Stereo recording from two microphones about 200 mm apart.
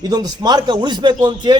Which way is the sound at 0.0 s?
20° right (ahead or behind).